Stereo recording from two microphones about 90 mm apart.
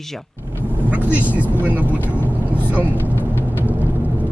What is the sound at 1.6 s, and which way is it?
Speech, 15° right (ahead or behind).